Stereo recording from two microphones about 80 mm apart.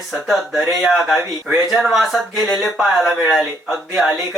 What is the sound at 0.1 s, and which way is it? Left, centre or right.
Speech, centre.